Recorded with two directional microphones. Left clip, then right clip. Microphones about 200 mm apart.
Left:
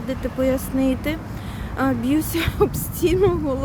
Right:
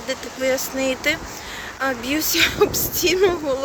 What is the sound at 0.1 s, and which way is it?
A woman's voice, 5° left (ahead or behind).